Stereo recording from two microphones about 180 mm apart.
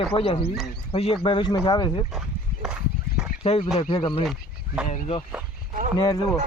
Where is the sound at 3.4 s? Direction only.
35° left (ahead or behind).